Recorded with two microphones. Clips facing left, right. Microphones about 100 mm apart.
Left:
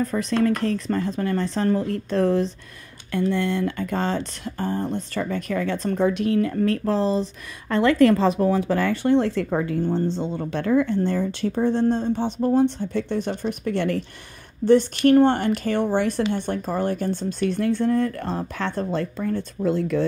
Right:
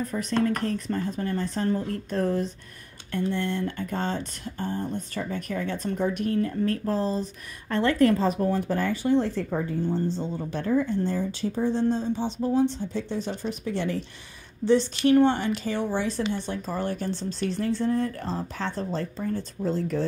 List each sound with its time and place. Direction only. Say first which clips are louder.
0.0 s speech: left 4 dB; 90° left; by 20.1 s 65° left (ahead or behind)